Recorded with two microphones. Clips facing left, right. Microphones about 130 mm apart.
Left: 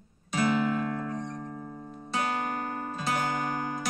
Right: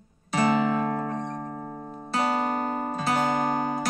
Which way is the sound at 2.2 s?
80° right.